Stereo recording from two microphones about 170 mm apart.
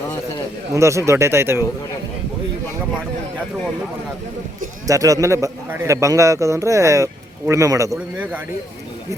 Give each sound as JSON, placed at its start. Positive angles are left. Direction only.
{"t": 0.7, "sound": "a man's voice", "side_deg": -15}
{"t": 4.9, "sound": "a man's voice", "side_deg": -20}
{"t": 7.9, "sound": "a man's voice", "side_deg": -5}